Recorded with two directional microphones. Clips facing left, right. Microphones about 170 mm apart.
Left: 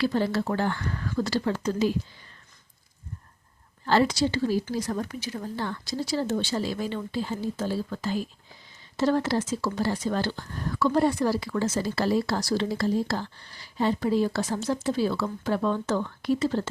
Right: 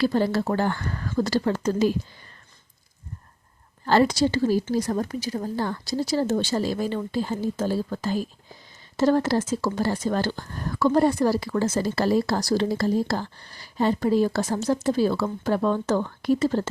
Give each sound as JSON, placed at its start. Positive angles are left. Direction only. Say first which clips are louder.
{"t": 0.0, "sound": "speech", "louder": "right 3 dB", "side_deg": -40}
{"t": 3.8, "sound": "speech", "louder": "right 3 dB", "side_deg": -45}